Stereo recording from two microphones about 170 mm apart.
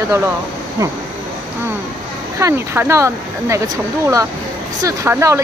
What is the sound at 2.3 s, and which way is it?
Speech, 15° right (ahead or behind).